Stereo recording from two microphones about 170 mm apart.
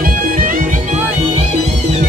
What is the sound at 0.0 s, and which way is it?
Music, 55° right (ahead or behind).